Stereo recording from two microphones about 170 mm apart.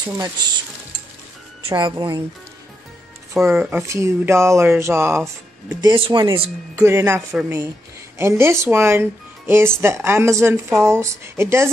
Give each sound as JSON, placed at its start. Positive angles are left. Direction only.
{"t": 0.2, "sound": "speech", "side_deg": -25}
{"t": 1.7, "sound": "speech", "side_deg": -25}
{"t": 3.3, "sound": "speech", "side_deg": -15}
{"t": 5.8, "sound": "speech", "side_deg": -30}
{"t": 6.7, "sound": "speech", "side_deg": -15}